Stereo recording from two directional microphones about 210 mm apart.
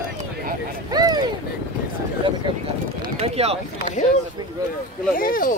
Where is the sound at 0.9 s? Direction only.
20° right (ahead or behind).